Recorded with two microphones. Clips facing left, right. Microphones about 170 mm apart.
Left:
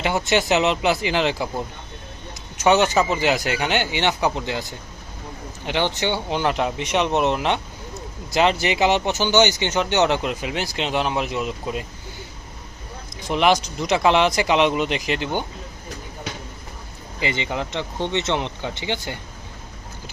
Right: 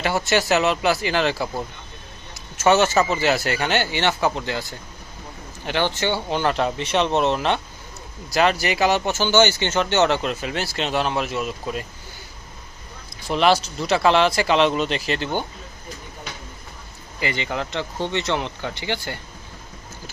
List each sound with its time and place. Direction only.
0.0 s speech: 20° left (ahead or behind)
13.2 s speech: 15° left (ahead or behind)
17.2 s speech: 20° left (ahead or behind)